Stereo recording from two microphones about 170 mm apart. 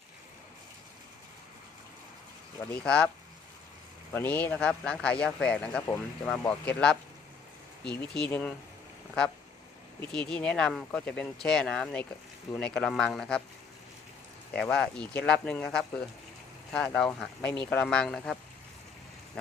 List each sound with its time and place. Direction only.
2.7 s speech: 5° left (ahead or behind)
4.1 s a man's voice: 10° left (ahead or behind)
10.0 s speech: 5° left (ahead or behind)
14.5 s speech: 5° left (ahead or behind)